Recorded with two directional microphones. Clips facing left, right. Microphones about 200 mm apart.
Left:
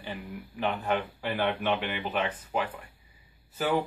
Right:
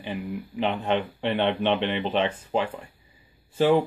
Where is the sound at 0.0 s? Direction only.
20° right (ahead or behind).